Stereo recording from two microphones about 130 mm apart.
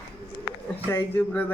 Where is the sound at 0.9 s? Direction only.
15° left (ahead or behind).